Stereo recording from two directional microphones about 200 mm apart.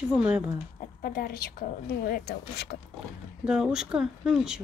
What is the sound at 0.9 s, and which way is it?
A woman's voice, 45° left (ahead or behind).